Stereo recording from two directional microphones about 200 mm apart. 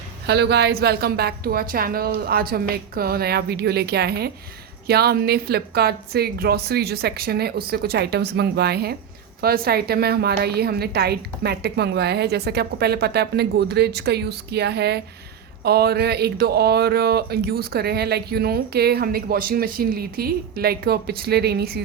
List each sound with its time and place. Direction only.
0.3 s speech: 55° right (ahead or behind)